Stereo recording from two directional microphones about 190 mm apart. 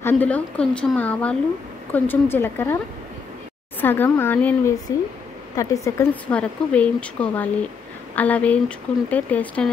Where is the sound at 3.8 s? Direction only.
10° left (ahead or behind).